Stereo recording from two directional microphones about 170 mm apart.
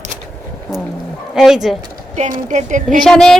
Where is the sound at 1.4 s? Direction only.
Centre (ahead or behind).